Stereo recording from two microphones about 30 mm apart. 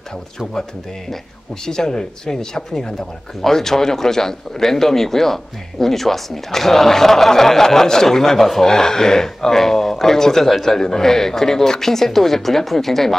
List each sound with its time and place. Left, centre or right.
1.7 s speech: centre
8.6 s speech: centre